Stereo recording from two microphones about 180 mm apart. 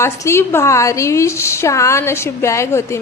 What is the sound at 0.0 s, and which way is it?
Speech, 15° left (ahead or behind).